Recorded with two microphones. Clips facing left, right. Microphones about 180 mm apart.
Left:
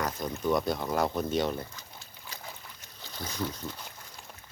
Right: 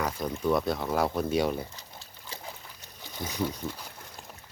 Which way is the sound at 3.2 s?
15° right (ahead or behind).